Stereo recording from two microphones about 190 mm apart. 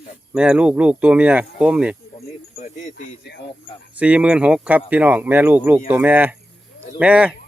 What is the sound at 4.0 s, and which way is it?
Speech, 5° right (ahead or behind).